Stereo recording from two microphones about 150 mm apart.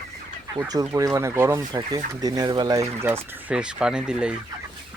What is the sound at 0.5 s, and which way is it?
Speech, 25° right (ahead or behind).